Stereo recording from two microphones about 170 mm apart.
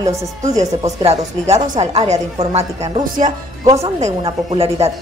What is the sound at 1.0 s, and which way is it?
A woman's voice, 40° right (ahead or behind).